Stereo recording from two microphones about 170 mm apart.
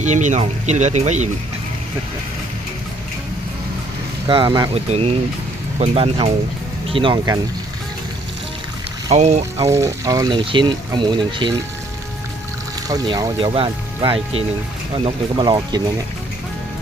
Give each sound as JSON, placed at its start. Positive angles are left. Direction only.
{"t": 0.0, "sound": "speech", "side_deg": -45}
{"t": 4.3, "sound": "speech", "side_deg": -25}
{"t": 4.7, "sound": "speech", "side_deg": -35}
{"t": 6.9, "sound": "speech", "side_deg": -25}
{"t": 9.1, "sound": "speech", "side_deg": -40}
{"t": 9.6, "sound": "speech", "side_deg": -15}
{"t": 12.9, "sound": "speech", "side_deg": -20}